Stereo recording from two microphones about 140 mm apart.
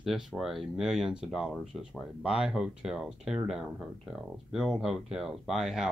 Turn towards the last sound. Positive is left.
turn(degrees=0)  # may be behind; listen again after turning